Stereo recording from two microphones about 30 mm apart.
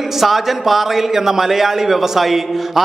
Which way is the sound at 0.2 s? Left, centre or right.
Centre.